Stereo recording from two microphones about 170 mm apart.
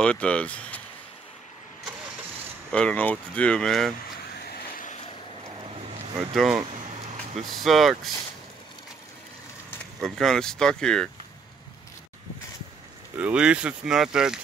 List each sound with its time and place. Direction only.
0.0 s speech: 5° left (ahead or behind)
2.7 s speech: 5° left (ahead or behind)
4.4 s vehicle: 65° left (ahead or behind)
6.3 s speech: centre (ahead or behind)
10.0 s speech: centre (ahead or behind)
13.2 s speech: 5° right (ahead or behind)